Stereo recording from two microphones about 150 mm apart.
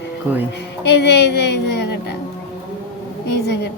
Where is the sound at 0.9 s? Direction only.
90° left.